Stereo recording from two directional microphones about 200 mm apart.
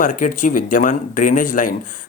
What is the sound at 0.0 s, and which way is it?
A man's voice, 40° left (ahead or behind).